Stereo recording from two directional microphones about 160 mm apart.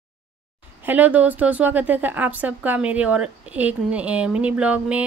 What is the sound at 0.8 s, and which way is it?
A woman's voice, 10° right (ahead or behind).